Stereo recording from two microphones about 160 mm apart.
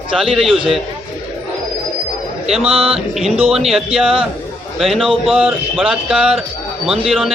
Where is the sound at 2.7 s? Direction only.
35° right (ahead or behind).